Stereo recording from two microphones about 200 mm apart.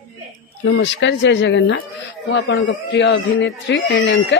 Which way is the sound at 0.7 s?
65° left (ahead or behind).